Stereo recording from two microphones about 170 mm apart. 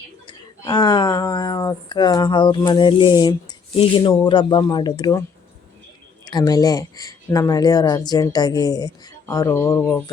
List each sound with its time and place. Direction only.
0.3 s speech: 25° left (ahead or behind)
6.2 s speech: 20° left (ahead or behind)